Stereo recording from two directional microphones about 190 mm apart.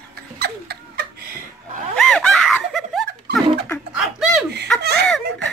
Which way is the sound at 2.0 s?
5° left (ahead or behind).